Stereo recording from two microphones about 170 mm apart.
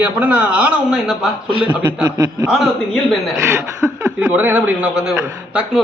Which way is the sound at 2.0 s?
20° right (ahead or behind).